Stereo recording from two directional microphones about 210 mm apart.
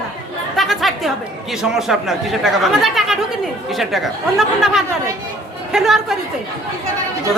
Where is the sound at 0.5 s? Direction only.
Centre (ahead or behind).